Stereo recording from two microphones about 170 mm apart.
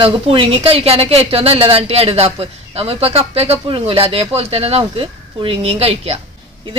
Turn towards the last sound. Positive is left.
turn(degrees=-35)  # may be behind; listen again after turning